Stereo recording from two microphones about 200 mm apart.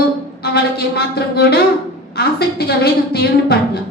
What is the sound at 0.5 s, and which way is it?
A woman's voice, 55° left (ahead or behind).